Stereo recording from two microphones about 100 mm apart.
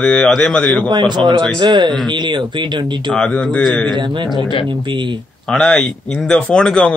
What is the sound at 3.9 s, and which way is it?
Speech, 50° right (ahead or behind).